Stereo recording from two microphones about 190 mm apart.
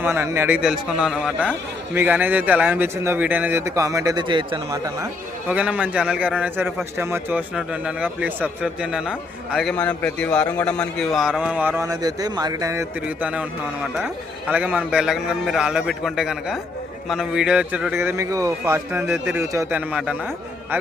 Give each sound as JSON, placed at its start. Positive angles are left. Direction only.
{"t": 0.0, "sound": "a man's voice", "side_deg": -10}
{"t": 5.5, "sound": "a man's voice", "side_deg": -5}
{"t": 14.5, "sound": "a man's voice", "side_deg": -5}